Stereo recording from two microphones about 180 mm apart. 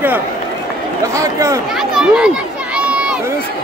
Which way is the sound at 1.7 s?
5° right (ahead or behind).